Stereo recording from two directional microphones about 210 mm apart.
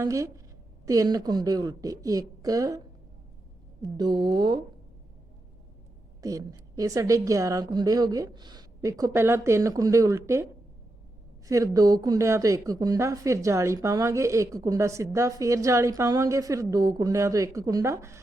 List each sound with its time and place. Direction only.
0.0 s speech: 15° right (ahead or behind)
3.8 s speech: 20° right (ahead or behind)
6.2 s speech: 15° right (ahead or behind)
11.4 s speech: 15° right (ahead or behind)